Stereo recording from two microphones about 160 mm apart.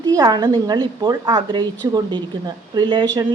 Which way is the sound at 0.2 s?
20° right (ahead or behind).